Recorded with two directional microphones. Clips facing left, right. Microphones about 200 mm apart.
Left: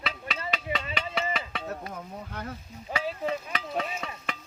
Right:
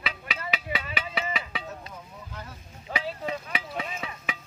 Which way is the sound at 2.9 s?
10° right (ahead or behind).